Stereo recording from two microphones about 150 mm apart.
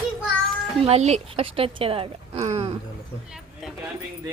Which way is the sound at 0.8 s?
45° right (ahead or behind).